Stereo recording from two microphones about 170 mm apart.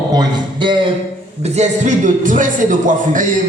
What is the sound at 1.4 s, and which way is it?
A man's voice, 40° right (ahead or behind).